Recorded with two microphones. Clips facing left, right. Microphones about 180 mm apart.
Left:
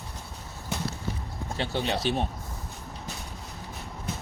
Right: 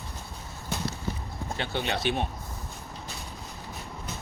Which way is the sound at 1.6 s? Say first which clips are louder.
Left 2 dB; 35° left (ahead or behind).